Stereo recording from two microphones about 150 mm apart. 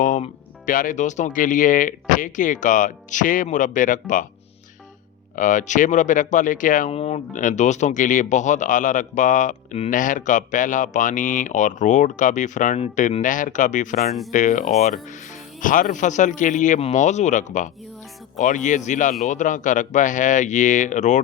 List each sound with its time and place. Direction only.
0.0 s speech: 60° left (ahead or behind)
5.4 s speech: 60° left (ahead or behind)
6.9 s speech: 45° left (ahead or behind)
9.9 s speech: 60° left (ahead or behind)
14.1 s speech: centre (ahead or behind)
14.3 s speech: 60° left (ahead or behind)